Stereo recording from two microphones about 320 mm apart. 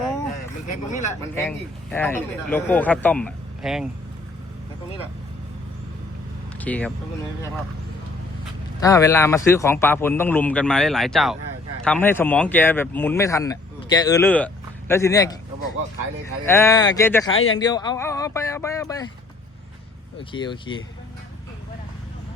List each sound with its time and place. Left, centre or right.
0.7 s speech: left
1.4 s speech: centre
6.6 s speech: centre
8.8 s speech: centre
16.5 s speech: centre
20.1 s speech: centre